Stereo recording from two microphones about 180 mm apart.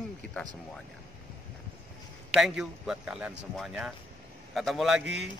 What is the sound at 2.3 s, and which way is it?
Speech, centre (ahead or behind).